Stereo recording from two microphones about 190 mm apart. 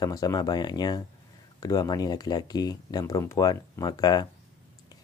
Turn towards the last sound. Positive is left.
turn(degrees=20)  # may be behind; listen again after turning